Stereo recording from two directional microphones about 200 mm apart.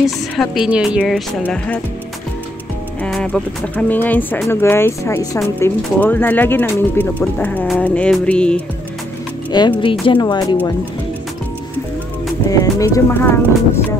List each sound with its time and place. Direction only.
0.0 s speech: centre (ahead or behind)
3.0 s speech: 5° left (ahead or behind)
9.5 s speech: 25° left (ahead or behind)
12.4 s speech: 15° left (ahead or behind)